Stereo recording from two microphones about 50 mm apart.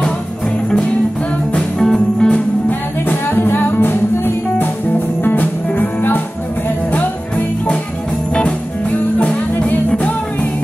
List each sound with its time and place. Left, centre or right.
1.8 s music: centre
3.1 s music: left
6.9 s jingle bell: left
9.2 s music: left